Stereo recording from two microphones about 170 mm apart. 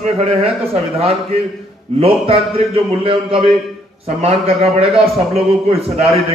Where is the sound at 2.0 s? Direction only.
35° right (ahead or behind).